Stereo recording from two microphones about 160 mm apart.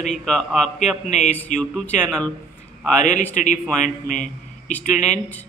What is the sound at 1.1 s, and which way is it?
Speech, 45° left (ahead or behind).